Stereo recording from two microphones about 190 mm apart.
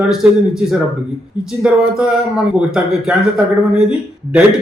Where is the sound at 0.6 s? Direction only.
5° right (ahead or behind).